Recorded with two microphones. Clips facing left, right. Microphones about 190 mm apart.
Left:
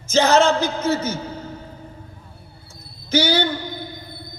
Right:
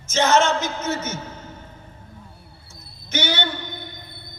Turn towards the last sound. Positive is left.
turn(degrees=35)  # may be behind; listen again after turning